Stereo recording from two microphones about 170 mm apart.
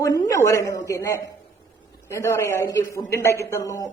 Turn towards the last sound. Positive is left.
turn(degrees=20)  # may be behind; listen again after turning